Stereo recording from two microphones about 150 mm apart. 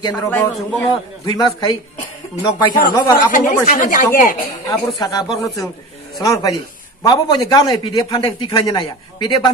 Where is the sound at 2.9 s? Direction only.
25° left (ahead or behind).